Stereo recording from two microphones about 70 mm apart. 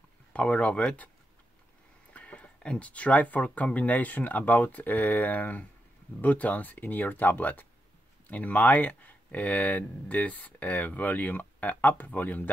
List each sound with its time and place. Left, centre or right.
0.3 s speech: centre
2.1 s speech: centre